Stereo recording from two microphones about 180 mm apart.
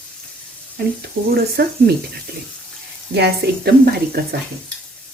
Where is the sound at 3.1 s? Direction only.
65° right (ahead or behind).